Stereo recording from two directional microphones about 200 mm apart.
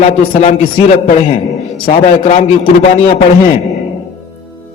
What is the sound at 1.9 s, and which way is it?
Speech, 30° left (ahead or behind).